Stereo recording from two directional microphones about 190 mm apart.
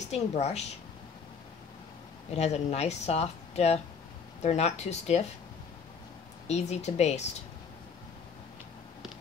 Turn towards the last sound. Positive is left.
turn(degrees=35)  # may be behind; listen again after turning